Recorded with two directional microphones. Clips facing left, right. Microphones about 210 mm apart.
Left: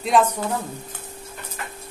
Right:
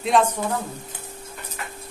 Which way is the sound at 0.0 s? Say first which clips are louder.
Left 1 dB; centre (ahead or behind).